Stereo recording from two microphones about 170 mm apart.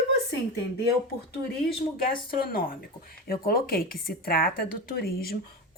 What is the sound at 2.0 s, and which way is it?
Speech, 60° left (ahead or behind).